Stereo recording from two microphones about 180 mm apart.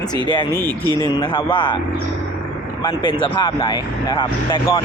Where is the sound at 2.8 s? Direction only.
25° left (ahead or behind).